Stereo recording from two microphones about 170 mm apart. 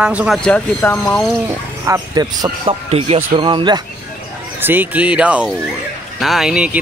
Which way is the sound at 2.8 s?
35° right (ahead or behind).